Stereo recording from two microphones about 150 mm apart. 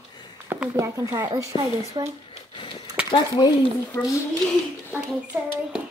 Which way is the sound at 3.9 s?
20° left (ahead or behind).